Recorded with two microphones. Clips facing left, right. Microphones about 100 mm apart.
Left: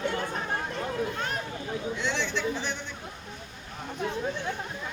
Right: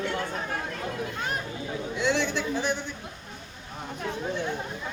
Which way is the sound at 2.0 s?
5° right (ahead or behind).